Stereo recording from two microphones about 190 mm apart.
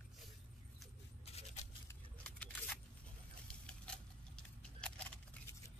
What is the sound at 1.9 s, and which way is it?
Keys jangling, 5° left (ahead or behind).